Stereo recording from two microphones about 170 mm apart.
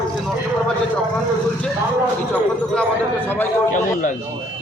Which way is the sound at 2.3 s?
10° left (ahead or behind).